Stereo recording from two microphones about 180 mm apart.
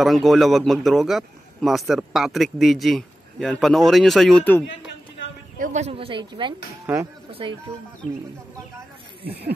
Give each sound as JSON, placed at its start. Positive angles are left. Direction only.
{"t": 0.0, "sound": "a man's voice", "side_deg": 0}
{"t": 5.6, "sound": "a woman's voice", "side_deg": -40}
{"t": 6.9, "sound": "speech", "side_deg": -10}